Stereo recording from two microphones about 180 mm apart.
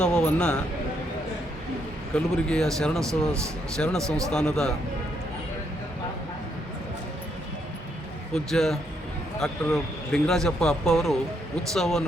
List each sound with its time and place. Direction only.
0.0 s speech: 5° left (ahead or behind)
2.1 s speech: 5° left (ahead or behind)
3.0 s speech: 15° right (ahead or behind)
3.8 s speech: 10° left (ahead or behind)
8.4 s speech: centre (ahead or behind)